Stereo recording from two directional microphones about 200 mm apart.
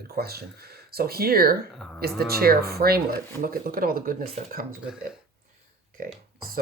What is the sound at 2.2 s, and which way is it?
Speech, 50° right (ahead or behind).